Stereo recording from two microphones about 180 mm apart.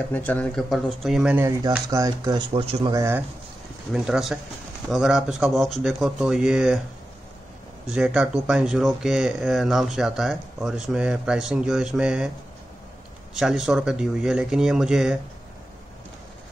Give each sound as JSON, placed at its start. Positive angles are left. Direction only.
{"t": 0.1, "sound": "speech", "side_deg": 10}
{"t": 1.9, "sound": "speech", "side_deg": -20}
{"t": 2.5, "sound": "speech", "side_deg": -30}
{"t": 2.9, "sound": "speech", "side_deg": -15}
{"t": 3.9, "sound": "speech", "side_deg": -5}
{"t": 7.9, "sound": "speech", "side_deg": -5}
{"t": 13.3, "sound": "speech", "side_deg": 0}